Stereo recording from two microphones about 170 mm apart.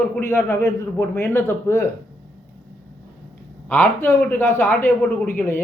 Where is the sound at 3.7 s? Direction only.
10° left (ahead or behind).